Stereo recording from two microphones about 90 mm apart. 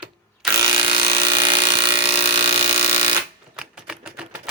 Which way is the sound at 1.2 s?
60° right (ahead or behind).